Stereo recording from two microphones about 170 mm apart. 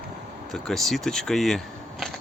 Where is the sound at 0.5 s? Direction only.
Centre (ahead or behind).